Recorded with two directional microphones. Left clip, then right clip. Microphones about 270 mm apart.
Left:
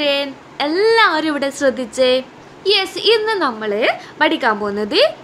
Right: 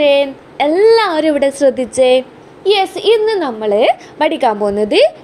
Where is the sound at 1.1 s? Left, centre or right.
Left.